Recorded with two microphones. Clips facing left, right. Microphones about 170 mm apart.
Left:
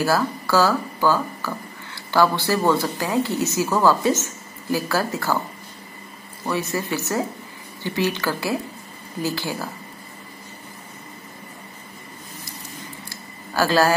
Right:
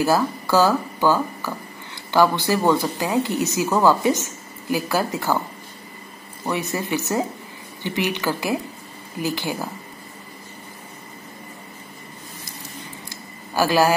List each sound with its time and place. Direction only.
0.0 s speech: 20° right (ahead or behind)
6.4 s speech: 20° right (ahead or behind)
13.1 s a sound: 15° right (ahead or behind)